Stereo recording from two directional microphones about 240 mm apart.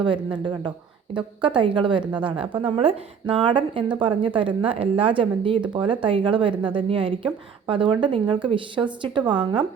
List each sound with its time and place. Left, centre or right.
0.4 s speech: centre